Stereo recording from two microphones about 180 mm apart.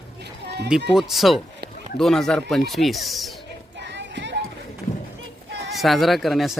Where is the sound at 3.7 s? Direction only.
75° right (ahead or behind).